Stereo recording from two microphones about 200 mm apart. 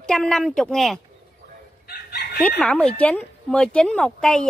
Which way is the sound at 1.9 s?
50° left (ahead or behind).